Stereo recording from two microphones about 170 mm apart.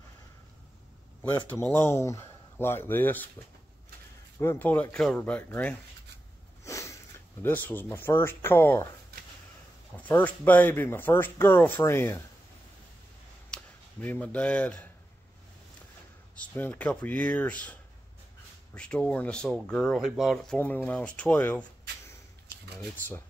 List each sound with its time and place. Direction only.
1.5 s speech: 15° left (ahead or behind)
4.4 s speech: 10° left (ahead or behind)
6.6 s sniff: 15° left (ahead or behind)
7.4 s speech: 10° left (ahead or behind)
9.9 s speech: 10° left (ahead or behind)
13.5 s speech: 10° left (ahead or behind)
16.3 s speech: 10° left (ahead or behind)
18.8 s speech: 5° left (ahead or behind)
20.5 s speech: 10° left (ahead or behind)